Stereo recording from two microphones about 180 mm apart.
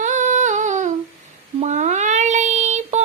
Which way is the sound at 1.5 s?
40° right (ahead or behind).